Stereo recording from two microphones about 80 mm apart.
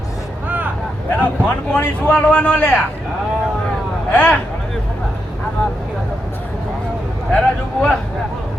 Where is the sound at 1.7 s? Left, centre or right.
Centre.